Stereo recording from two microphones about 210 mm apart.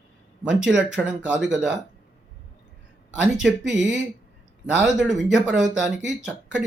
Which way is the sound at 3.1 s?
5° right (ahead or behind).